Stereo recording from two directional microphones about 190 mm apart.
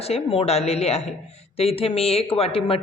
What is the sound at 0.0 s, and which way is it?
A woman's voice, 30° left (ahead or behind).